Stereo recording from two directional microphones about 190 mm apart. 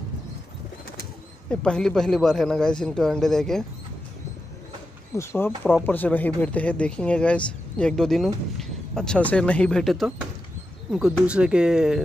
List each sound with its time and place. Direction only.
1.5 s speech: 5° left (ahead or behind)
5.1 s speech: 15° left (ahead or behind); by 12.0 s 5° right (ahead or behind)